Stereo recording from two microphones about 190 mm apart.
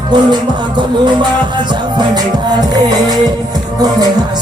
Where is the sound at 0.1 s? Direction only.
25° right (ahead or behind).